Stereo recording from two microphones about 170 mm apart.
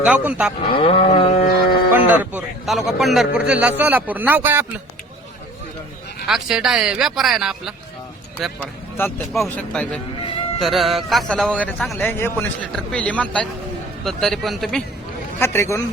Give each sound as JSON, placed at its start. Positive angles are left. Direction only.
{"t": 0.0, "sound": "speech", "side_deg": -5}
{"t": 0.7, "sound": "a sound", "side_deg": 35}
{"t": 2.0, "sound": "speech", "side_deg": -10}
{"t": 6.2, "sound": "a man's voice", "side_deg": -5}
{"t": 9.0, "sound": "a man's voice", "side_deg": 10}
{"t": 15.4, "sound": "speech", "side_deg": 15}